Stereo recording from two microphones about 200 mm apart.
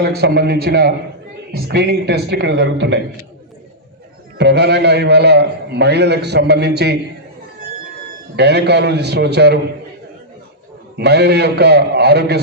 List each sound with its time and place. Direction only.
0.0 s a man's voice: 55° right (ahead or behind)
4.4 s a man's voice: 55° right (ahead or behind)
8.4 s a man's voice: 55° right (ahead or behind)
10.9 s a man's voice: 55° right (ahead or behind)